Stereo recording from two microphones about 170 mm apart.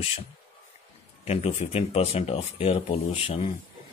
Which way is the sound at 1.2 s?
35° left (ahead or behind).